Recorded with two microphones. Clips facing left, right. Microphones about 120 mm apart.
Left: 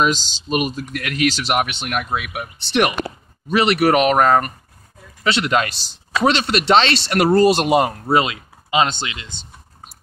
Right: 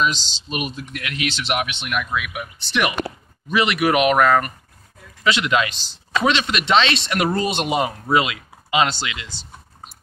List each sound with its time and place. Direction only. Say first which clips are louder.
0.0 s speech: left 3 dB; 45° left (ahead or behind)
8.2 s speech: left 2 dB; 30° left (ahead or behind)